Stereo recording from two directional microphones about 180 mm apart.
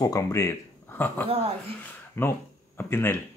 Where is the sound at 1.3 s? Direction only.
35° right (ahead or behind).